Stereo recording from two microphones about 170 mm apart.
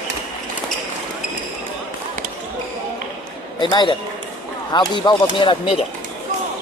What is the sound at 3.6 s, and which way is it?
A man's voice, 30° left (ahead or behind).